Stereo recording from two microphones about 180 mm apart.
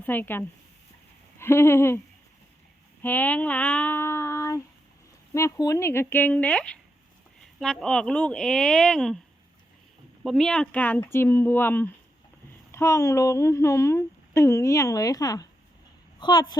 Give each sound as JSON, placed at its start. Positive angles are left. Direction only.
{"t": 0.0, "sound": "speech", "side_deg": 10}
{"t": 1.4, "sound": "a sound", "side_deg": 15}
{"t": 3.0, "sound": "child singing", "side_deg": 10}
{"t": 5.3, "sound": "speech", "side_deg": 15}
{"t": 10.2, "sound": "speech", "side_deg": 5}